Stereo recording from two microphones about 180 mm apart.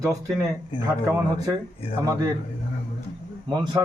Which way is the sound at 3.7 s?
15° right (ahead or behind).